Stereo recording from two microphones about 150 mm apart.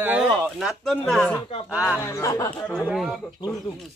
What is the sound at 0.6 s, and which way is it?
Speech, centre (ahead or behind).